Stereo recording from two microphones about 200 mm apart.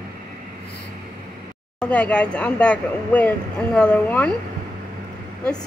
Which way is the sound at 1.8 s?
5° left (ahead or behind).